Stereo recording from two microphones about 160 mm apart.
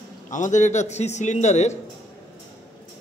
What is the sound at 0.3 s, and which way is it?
A man's voice, 50° left (ahead or behind).